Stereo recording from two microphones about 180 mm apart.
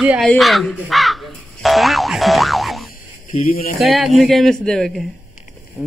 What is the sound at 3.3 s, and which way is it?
Speech, 50° left (ahead or behind).